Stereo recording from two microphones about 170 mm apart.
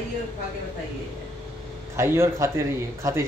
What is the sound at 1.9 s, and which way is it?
Speech, 15° right (ahead or behind).